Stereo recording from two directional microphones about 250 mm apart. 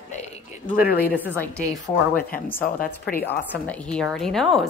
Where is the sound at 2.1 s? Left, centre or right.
Left.